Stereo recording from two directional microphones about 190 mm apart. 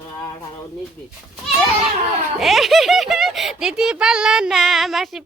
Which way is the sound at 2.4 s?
Centre (ahead or behind).